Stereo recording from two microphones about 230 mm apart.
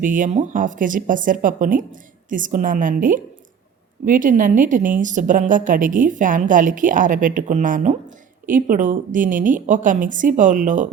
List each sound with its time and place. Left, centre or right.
0.0 s a woman's voice: right